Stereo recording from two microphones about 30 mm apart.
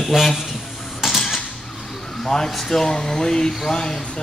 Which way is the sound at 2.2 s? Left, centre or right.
Centre.